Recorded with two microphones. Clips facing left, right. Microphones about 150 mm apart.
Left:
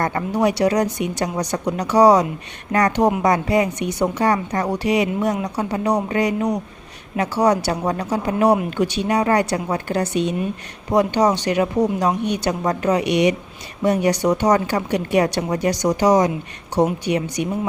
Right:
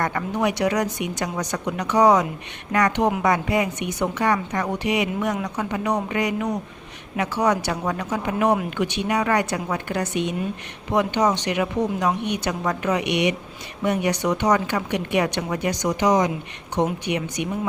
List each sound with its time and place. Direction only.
0.0 s a woman's voice: 30° left (ahead or behind)